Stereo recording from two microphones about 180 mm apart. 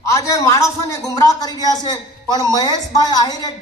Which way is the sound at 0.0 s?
15° left (ahead or behind).